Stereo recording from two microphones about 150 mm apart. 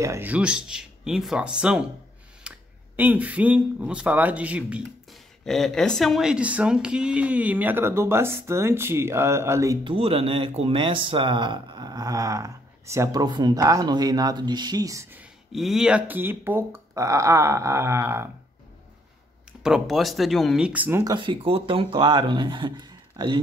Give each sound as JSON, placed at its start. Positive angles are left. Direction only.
{"t": 0.0, "sound": "speech", "side_deg": -20}
{"t": 0.3, "sound": "speech", "side_deg": -5}
{"t": 2.4, "sound": "a sound", "side_deg": -5}
{"t": 3.0, "sound": "speech", "side_deg": -10}
{"t": 5.4, "sound": "speech", "side_deg": 0}
{"t": 9.8, "sound": "speech", "side_deg": -40}
{"t": 15.5, "sound": "speech", "side_deg": 0}
{"t": 19.6, "sound": "speech", "side_deg": -5}
{"t": 21.0, "sound": "speech", "side_deg": -30}